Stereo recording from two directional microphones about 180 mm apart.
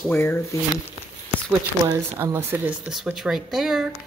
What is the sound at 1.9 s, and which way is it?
Speech, 15° right (ahead or behind).